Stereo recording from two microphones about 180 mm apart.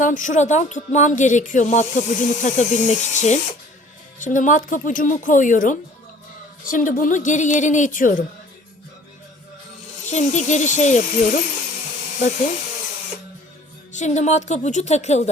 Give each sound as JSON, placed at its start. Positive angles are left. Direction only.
{"t": 0.0, "sound": "speech", "side_deg": 45}
{"t": 10.1, "sound": "speech", "side_deg": 40}
{"t": 13.9, "sound": "a woman's voice", "side_deg": 40}